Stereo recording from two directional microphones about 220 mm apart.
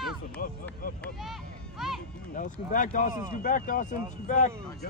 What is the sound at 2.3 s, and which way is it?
Speech, 35° left (ahead or behind).